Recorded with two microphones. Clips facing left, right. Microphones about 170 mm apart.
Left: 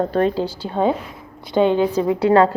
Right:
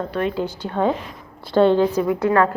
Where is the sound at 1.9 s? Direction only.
25° left (ahead or behind).